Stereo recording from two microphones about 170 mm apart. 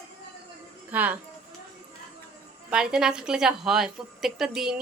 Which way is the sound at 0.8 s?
10° right (ahead or behind).